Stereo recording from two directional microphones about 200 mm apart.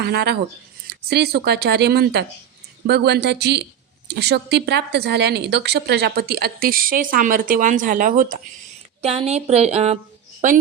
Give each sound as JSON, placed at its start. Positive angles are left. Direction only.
{"t": 0.0, "sound": "a woman's voice", "side_deg": -55}
{"t": 9.0, "sound": "a woman's voice", "side_deg": -30}